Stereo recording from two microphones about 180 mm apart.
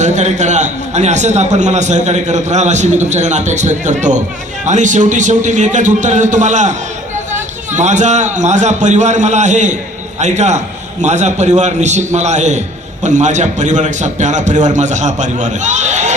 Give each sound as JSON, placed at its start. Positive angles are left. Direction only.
{"t": 0.0, "sound": "a man's voice", "side_deg": -40}